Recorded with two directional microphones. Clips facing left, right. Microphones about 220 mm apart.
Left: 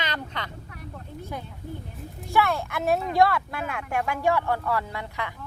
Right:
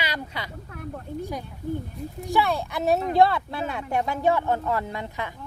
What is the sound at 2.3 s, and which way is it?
Speech, 15° right (ahead or behind).